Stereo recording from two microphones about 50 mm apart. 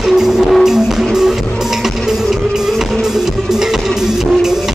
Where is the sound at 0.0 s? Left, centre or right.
Centre.